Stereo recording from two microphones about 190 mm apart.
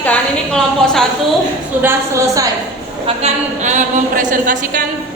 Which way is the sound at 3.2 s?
35° right (ahead or behind).